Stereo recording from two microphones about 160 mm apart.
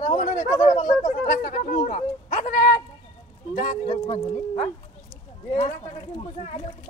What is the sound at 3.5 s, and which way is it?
Speech, 50° left (ahead or behind).